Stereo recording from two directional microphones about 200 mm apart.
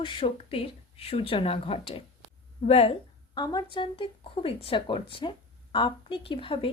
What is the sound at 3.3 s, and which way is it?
A woman's voice, 20° left (ahead or behind).